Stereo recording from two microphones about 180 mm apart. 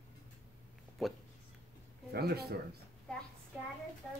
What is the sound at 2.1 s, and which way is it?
Speech, 60° right (ahead or behind).